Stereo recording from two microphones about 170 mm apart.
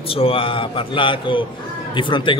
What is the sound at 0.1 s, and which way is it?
A man's voice, 35° left (ahead or behind).